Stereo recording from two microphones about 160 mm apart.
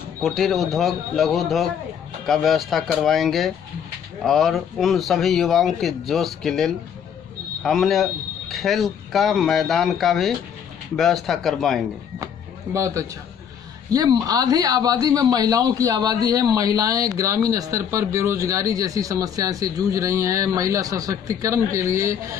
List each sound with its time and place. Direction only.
0.2 s speech: centre (ahead or behind)
12.7 s speech: 20° right (ahead or behind)